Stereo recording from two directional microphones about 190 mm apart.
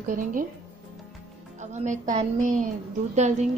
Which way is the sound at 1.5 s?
40° right (ahead or behind).